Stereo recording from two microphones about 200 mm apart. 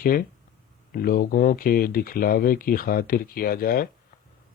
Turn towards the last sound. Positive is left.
turn(degrees=45)  # may be behind; listen again after turning